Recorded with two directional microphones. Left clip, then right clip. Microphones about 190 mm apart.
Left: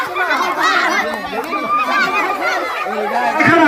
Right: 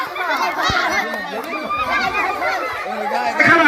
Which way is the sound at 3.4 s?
20° right (ahead or behind).